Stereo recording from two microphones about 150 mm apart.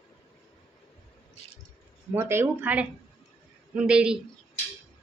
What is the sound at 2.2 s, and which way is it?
A woman's voice, 15° right (ahead or behind).